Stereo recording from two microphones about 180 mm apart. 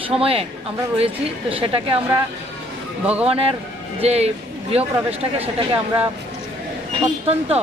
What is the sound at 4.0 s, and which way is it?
Speech, 35° right (ahead or behind).